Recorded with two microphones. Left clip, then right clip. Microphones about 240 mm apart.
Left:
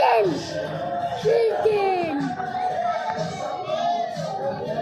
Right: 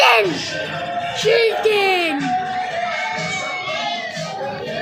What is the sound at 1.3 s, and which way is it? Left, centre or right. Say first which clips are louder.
Speech: right 4 dB; centre.